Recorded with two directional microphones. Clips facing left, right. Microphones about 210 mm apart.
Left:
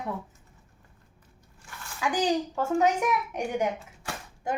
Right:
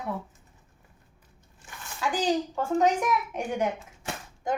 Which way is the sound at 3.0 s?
10° left (ahead or behind).